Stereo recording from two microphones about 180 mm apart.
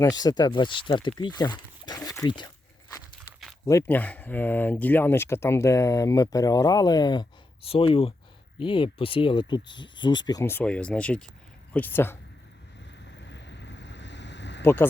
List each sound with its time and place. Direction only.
0.0 s speech: 20° left (ahead or behind)
3.7 s speech: 15° left (ahead or behind)
13.1 s boat: 75° left (ahead or behind)
14.6 s speech: 10° left (ahead or behind)